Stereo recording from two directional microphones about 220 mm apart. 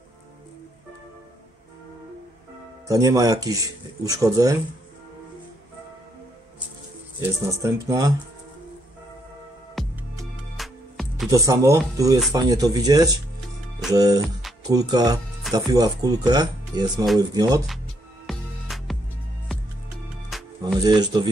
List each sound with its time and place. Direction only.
2.9 s speech: 15° right (ahead or behind)
7.2 s speech: 15° right (ahead or behind)
9.8 s music: centre (ahead or behind)
11.2 s speech: 15° right (ahead or behind)
18.2 s music: centre (ahead or behind)
20.3 s music: centre (ahead or behind)
20.8 s speech: 20° right (ahead or behind)